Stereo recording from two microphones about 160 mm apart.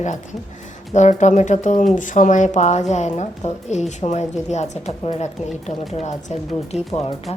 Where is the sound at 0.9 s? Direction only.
50° left (ahead or behind).